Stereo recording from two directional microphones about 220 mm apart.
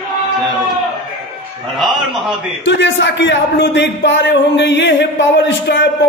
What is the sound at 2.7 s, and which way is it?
A man's voice, 55° left (ahead or behind).